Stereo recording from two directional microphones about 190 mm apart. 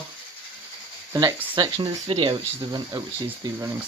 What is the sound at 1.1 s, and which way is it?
Speech, 20° right (ahead or behind).